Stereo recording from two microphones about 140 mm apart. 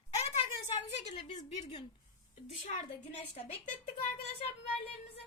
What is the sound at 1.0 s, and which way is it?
Speech, 55° left (ahead or behind).